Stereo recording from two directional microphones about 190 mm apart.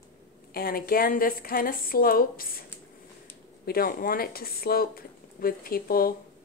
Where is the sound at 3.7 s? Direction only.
50° left (ahead or behind).